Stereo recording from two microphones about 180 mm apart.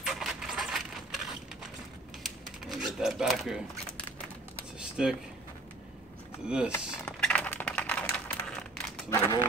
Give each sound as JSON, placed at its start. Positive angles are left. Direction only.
{"t": 0.0, "sound": "printer", "side_deg": 0}
{"t": 2.2, "sound": "a sound", "side_deg": 0}
{"t": 4.7, "sound": "typing", "side_deg": -5}
{"t": 6.4, "sound": "speech", "side_deg": -5}
{"t": 7.1, "sound": "typing", "side_deg": 5}
{"t": 9.1, "sound": "speech", "side_deg": 15}